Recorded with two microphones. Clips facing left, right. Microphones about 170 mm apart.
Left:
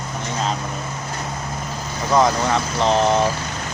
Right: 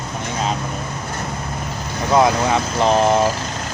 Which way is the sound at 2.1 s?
10° right (ahead or behind).